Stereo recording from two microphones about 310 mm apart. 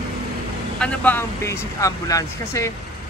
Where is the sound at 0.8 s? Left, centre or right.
Centre.